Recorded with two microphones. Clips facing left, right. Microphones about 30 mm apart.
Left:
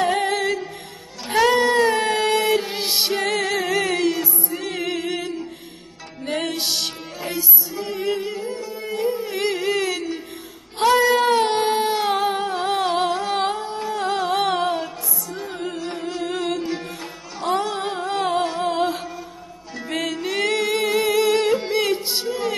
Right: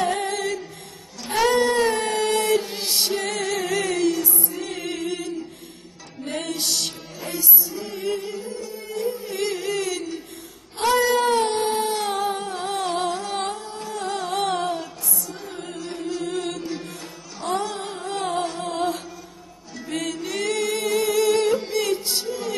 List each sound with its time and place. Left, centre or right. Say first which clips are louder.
0.1 s music: left 4 dB; left
1.5 s a sound: left 1 dB; left
2.0 s music: left 3 dB; left
5.0 s music: left 2 dB; left
10.8 s a sound: left 3 dB; left
11.8 s music: left 4 dB; left
19.9 s music: left 3 dB; left